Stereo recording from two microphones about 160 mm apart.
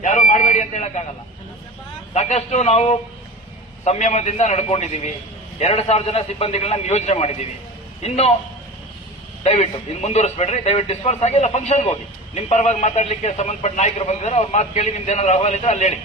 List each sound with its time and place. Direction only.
0.0 s a sound: 50° left (ahead or behind)
2.1 s a man's voice: 45° left (ahead or behind)
9.4 s a man's voice: 45° left (ahead or behind)